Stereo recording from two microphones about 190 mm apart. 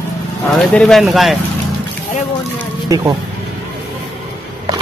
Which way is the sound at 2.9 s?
20° right (ahead or behind).